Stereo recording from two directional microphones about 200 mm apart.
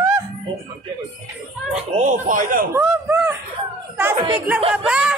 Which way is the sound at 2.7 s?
10° right (ahead or behind).